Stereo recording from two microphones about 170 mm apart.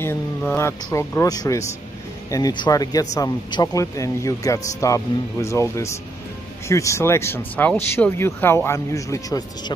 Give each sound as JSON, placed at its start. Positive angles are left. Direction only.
{"t": 0.0, "sound": "speech", "side_deg": 10}